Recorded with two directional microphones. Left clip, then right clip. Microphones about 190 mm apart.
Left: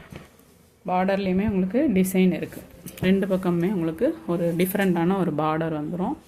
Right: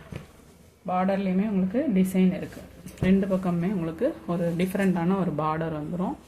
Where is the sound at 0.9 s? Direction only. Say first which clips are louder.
Left 3 dB; 55° left (ahead or behind); by 6.1 s 35° left (ahead or behind).